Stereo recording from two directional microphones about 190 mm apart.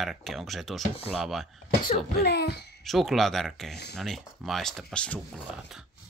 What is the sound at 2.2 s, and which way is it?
Speech, 60° left (ahead or behind).